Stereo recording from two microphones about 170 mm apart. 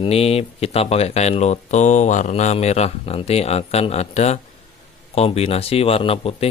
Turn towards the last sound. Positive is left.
turn(degrees=35)  # may be behind; listen again after turning